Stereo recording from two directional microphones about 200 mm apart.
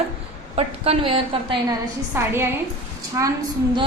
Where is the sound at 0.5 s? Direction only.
30° right (ahead or behind).